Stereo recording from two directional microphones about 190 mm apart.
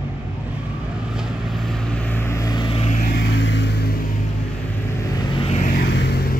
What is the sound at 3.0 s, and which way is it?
Vehicle, 55° left (ahead or behind).